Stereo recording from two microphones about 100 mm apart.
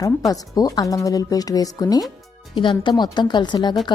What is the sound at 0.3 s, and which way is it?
Speech, 40° left (ahead or behind).